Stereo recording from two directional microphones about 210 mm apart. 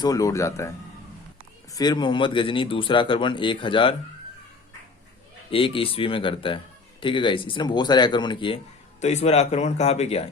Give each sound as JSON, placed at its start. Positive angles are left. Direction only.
{"t": 0.0, "sound": "speech", "side_deg": 15}
{"t": 1.7, "sound": "speech", "side_deg": 20}
{"t": 5.5, "sound": "speech", "side_deg": 25}